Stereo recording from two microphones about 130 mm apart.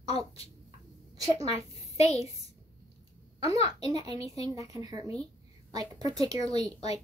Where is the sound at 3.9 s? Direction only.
30° right (ahead or behind).